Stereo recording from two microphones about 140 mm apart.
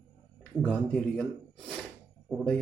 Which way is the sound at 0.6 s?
10° left (ahead or behind).